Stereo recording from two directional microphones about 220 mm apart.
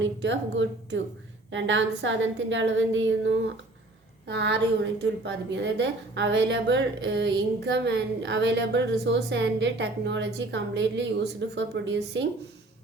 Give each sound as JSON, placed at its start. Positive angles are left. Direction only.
{"t": 0.0, "sound": "a woman's voice", "side_deg": -55}